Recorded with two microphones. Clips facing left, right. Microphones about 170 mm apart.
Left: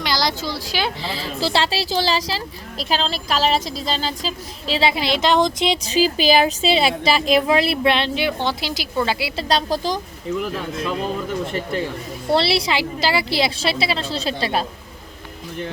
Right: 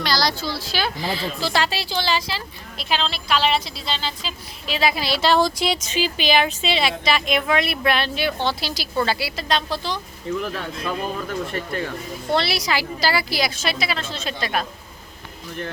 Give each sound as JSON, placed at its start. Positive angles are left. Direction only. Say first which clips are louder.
{"t": 0.0, "sound": "a woman's voice", "louder": "even", "side_deg": 20}
{"t": 5.8, "sound": "a woman's voice", "louder": "left 5 dB", "side_deg": 35}
{"t": 9.3, "sound": "speech", "louder": "left 3 dB", "side_deg": 30}
{"t": 11.5, "sound": "a woman's voice", "louder": "left 3 dB", "side_deg": 20}